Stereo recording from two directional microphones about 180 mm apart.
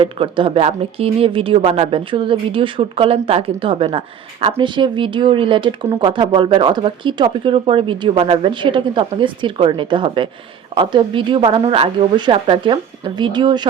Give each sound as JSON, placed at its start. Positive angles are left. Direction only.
{"t": 0.0, "sound": "speech", "side_deg": -30}